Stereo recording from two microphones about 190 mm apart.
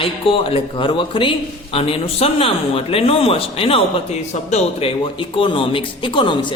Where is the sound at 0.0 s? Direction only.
30° left (ahead or behind).